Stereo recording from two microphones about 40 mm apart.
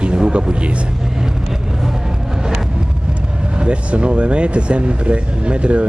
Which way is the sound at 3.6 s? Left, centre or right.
Right.